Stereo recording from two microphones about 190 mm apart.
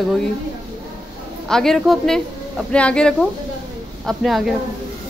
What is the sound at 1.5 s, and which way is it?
Speech, 5° left (ahead or behind).